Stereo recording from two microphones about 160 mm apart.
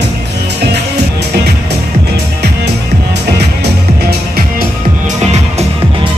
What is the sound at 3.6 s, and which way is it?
Music, 90° right.